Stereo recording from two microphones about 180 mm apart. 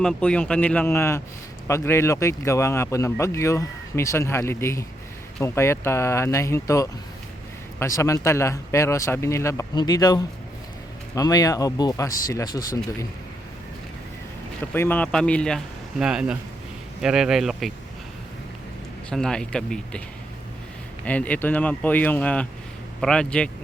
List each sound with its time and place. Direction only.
0.0 s speech: 5° left (ahead or behind); by 13.1 s 20° left (ahead or behind)
14.6 s speech: 10° left (ahead or behind)
19.1 s speech: 5° left (ahead or behind)
21.0 s speech: 10° left (ahead or behind)